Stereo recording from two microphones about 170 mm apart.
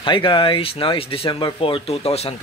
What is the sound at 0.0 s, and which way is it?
A man's voice, 30° left (ahead or behind).